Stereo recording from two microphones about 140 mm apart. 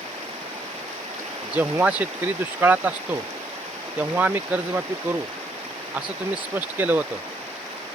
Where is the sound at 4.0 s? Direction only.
10° right (ahead or behind).